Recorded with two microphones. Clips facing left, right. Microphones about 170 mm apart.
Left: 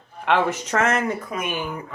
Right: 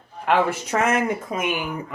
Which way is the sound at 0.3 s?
10° right (ahead or behind).